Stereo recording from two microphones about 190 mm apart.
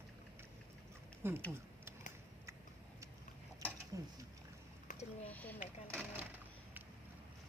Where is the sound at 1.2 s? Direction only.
10° right (ahead or behind).